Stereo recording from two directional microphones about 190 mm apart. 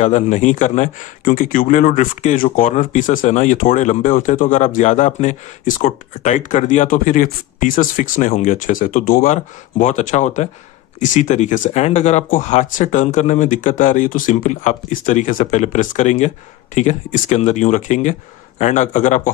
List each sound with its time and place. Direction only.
0.0 s speech: 40° left (ahead or behind)